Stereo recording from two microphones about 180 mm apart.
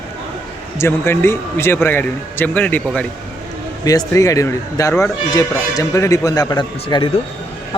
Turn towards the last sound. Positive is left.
turn(degrees=25)  # may be behind; listen again after turning